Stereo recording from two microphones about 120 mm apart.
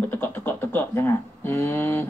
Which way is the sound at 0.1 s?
15° left (ahead or behind).